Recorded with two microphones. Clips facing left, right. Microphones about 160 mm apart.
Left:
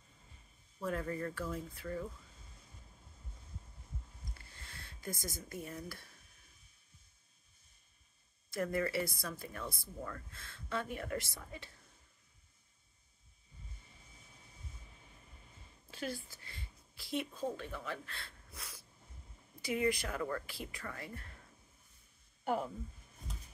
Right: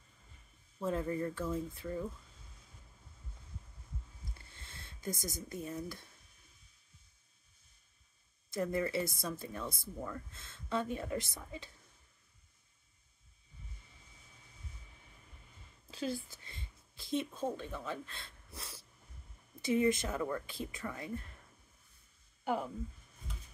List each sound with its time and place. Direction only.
0.7 s speech: 25° right (ahead or behind)
4.6 s speech: 20° right (ahead or behind)
8.5 s speech: 20° right (ahead or behind)
16.0 s speech: 20° right (ahead or behind)
22.4 s speech: centre (ahead or behind)